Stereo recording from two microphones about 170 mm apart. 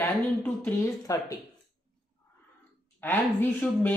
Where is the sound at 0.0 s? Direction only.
15° left (ahead or behind).